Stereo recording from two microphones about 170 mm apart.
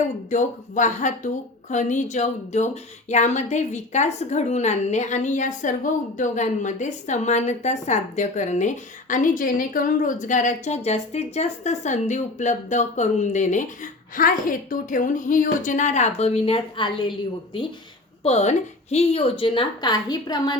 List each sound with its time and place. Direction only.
0.3 s a woman's voice: 45° left (ahead or behind); by 20.6 s 25° left (ahead or behind)